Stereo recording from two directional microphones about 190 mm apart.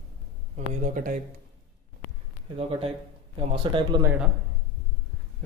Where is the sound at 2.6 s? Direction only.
30° right (ahead or behind).